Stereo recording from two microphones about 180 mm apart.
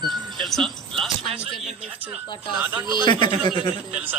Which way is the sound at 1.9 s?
10° right (ahead or behind).